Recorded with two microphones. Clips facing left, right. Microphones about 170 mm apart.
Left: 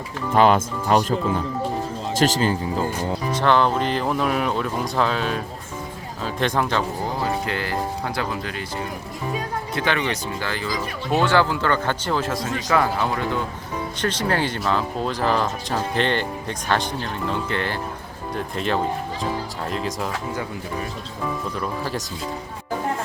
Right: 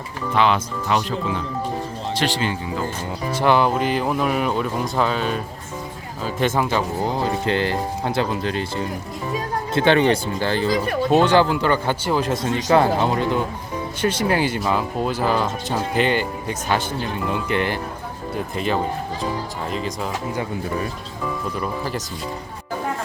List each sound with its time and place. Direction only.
0.3 s speech: 45° left (ahead or behind)
3.3 s speech: 10° right (ahead or behind)
7.4 s a man's voice: 25° right (ahead or behind)
9.7 s speech: 30° right (ahead or behind)
10.7 s speech: 55° right (ahead or behind)
11.1 s a man's voice: 20° right (ahead or behind)
14.0 s speech: 10° right (ahead or behind)
18.5 s speech: 5° right (ahead or behind)
21.6 s speech: centre (ahead or behind)